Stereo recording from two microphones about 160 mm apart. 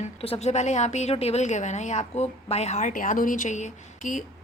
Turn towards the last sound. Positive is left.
turn(degrees=50)  # may be behind; listen again after turning